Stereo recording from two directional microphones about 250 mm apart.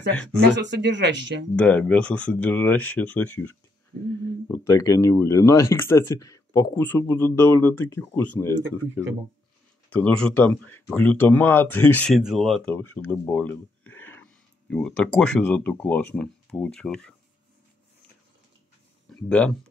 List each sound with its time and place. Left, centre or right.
0.1 s speech: centre
0.4 s speech: right
1.6 s speech: centre
19.0 s speech: centre